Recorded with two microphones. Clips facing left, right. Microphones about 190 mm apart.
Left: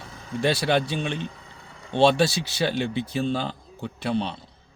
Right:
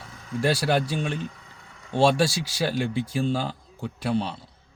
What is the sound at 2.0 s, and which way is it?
A man's voice, 10° right (ahead or behind).